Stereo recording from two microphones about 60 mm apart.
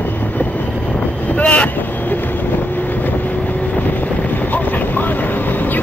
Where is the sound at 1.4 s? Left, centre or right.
Left.